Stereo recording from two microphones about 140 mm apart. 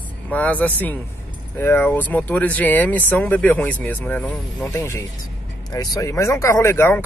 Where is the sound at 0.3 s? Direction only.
10° left (ahead or behind).